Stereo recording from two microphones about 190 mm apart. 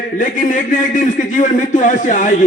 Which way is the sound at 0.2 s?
45° left (ahead or behind).